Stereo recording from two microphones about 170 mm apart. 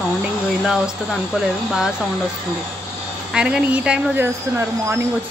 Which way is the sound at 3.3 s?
5° right (ahead or behind).